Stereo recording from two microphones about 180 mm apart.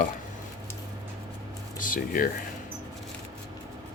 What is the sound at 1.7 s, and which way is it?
Speech, 50° left (ahead or behind).